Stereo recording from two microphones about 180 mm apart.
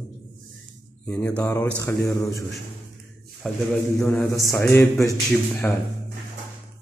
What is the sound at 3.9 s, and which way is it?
Mantra, 15° left (ahead or behind).